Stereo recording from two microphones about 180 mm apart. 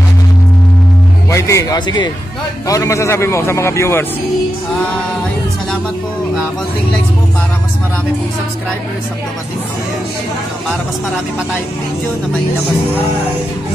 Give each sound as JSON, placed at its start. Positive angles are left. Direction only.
{"t": 1.3, "sound": "a man's voice", "side_deg": 15}